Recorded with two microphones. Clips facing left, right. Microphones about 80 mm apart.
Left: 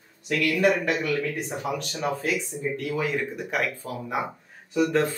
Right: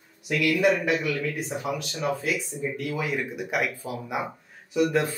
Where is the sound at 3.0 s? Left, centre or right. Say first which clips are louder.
Left 2 dB; centre.